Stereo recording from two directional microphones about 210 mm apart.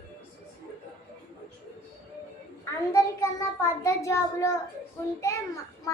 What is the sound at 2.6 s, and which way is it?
Child singing, 15° left (ahead or behind).